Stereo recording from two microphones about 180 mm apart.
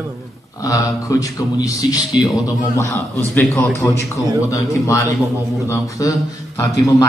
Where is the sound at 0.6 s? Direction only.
20° left (ahead or behind).